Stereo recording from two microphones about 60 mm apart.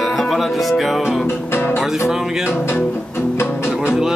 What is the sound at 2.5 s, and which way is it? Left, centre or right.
Speech, left.